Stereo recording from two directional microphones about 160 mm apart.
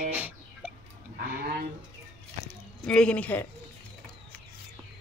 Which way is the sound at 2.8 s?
5° left (ahead or behind).